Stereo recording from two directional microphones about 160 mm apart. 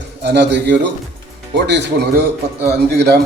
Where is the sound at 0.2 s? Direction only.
90° right.